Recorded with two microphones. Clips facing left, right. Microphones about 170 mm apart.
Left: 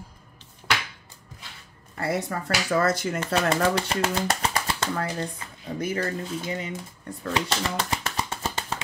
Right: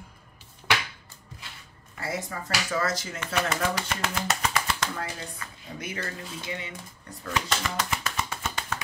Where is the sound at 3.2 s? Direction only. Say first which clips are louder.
Left 4 dB; 30° left (ahead or behind).